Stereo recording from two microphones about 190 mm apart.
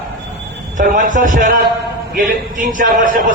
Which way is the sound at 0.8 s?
45° right (ahead or behind).